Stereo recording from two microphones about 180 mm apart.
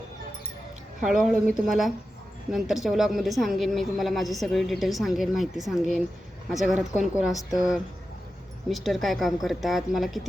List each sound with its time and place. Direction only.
1.0 s a woman's voice: centre (ahead or behind)